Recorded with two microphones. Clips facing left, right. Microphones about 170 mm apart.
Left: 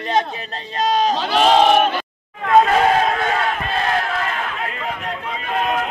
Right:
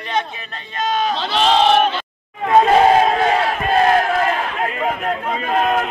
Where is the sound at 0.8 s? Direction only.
35° left (ahead or behind).